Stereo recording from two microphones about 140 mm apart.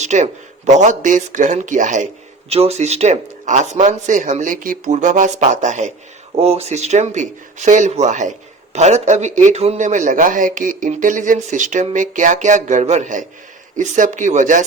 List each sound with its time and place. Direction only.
0.0 s speech: 55° right (ahead or behind)
2.5 s speech: 45° right (ahead or behind)
6.3 s speech: 45° right (ahead or behind); by 14.6 s 60° right (ahead or behind)